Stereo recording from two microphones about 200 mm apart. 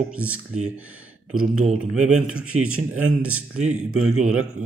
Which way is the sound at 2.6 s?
90° right.